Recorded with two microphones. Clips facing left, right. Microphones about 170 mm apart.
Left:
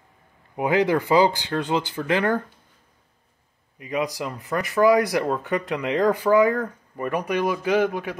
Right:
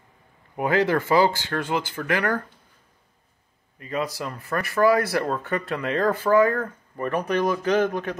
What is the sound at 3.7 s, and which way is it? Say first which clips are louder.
Speech: left 2 dB; 15° left (ahead or behind).